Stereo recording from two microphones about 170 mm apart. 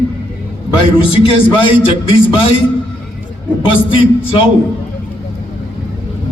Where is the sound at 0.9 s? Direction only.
30° left (ahead or behind).